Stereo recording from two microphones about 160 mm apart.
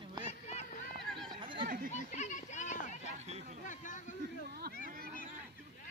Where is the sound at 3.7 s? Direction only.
50° left (ahead or behind).